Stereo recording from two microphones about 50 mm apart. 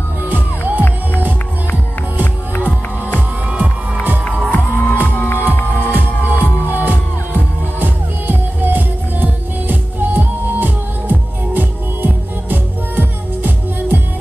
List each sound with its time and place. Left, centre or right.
0.3 s music: right
3.5 s music: right
4.5 s music: left
5.9 s music: right